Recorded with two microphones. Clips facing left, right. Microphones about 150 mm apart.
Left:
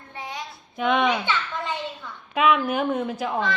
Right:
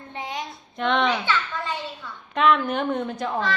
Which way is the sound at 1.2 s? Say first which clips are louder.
Right 1 dB; 15° left (ahead or behind).